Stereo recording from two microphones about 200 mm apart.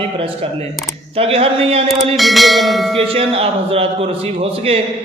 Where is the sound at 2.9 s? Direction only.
30° right (ahead or behind).